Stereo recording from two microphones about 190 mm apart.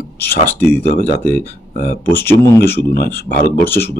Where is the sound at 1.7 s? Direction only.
45° left (ahead or behind).